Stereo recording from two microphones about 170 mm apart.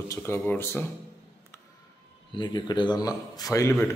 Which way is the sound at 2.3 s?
30° left (ahead or behind).